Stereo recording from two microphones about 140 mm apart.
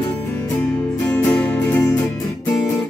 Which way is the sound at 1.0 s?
10° left (ahead or behind).